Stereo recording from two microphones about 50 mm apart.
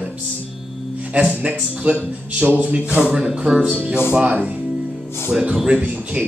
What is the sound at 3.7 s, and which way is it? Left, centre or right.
Speech, right.